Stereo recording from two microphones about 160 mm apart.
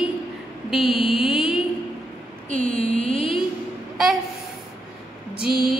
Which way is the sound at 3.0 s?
35° left (ahead or behind).